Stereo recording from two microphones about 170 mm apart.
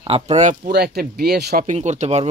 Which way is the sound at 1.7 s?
40° right (ahead or behind).